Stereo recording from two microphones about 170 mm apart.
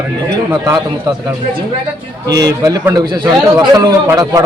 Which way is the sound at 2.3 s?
20° right (ahead or behind).